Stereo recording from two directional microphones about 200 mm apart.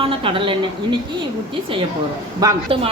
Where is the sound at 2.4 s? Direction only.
25° right (ahead or behind).